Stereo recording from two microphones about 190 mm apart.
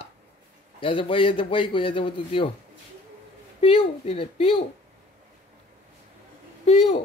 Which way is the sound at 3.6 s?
30° left (ahead or behind).